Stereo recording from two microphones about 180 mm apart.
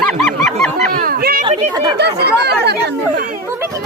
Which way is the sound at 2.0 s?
65° right (ahead or behind).